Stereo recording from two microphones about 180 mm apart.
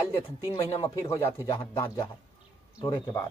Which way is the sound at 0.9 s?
20° left (ahead or behind).